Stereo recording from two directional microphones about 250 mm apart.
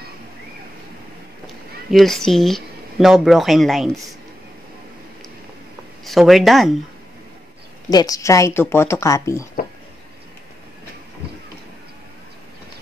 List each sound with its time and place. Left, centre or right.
1.9 s speech: centre
6.0 s speech: centre
7.9 s speech: centre